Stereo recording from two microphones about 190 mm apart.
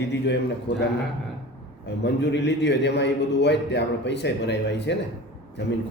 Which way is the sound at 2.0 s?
65° left (ahead or behind).